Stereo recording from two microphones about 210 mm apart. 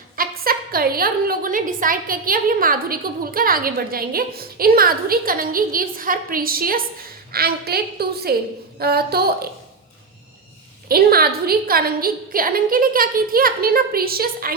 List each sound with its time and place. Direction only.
0.2 s a woman's voice: 45° right (ahead or behind)
10.8 s a woman's voice: 45° right (ahead or behind)